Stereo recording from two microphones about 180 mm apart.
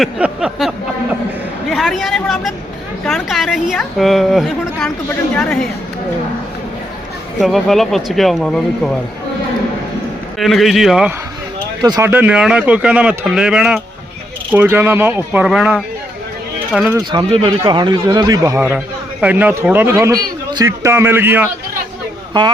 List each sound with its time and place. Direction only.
0.0 s a sound: 5° right (ahead or behind)
1.7 s a man's voice: centre (ahead or behind)
7.3 s a man's voice: centre (ahead or behind)
10.3 s a man's voice: centre (ahead or behind)
11.8 s a man's voice: 20° right (ahead or behind); by 15.8 s 5° right (ahead or behind)
17.0 s a man's voice: 25° right (ahead or behind)
22.3 s speech: 25° right (ahead or behind)